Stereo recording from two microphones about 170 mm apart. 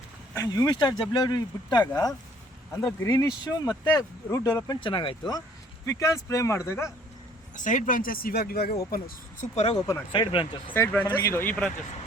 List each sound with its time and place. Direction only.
0.3 s speech: 20° left (ahead or behind)
3.0 s speech: 15° left (ahead or behind)
7.5 s speech: 50° left (ahead or behind)
9.7 s speech: 15° left (ahead or behind)
10.1 s speech: 30° left (ahead or behind)
10.8 s speech: 10° left (ahead or behind)